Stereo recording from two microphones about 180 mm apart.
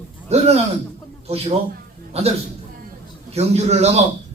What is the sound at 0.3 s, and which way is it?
Speech, 35° right (ahead or behind).